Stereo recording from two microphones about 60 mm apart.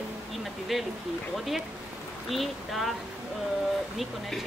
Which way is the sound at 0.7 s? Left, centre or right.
Centre.